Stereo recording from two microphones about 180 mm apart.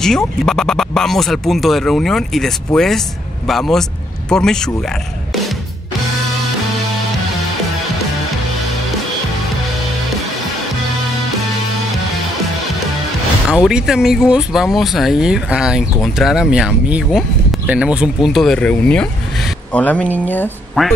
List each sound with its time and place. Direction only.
0.0 s speech: 5° left (ahead or behind)
13.7 s speech: 5° right (ahead or behind)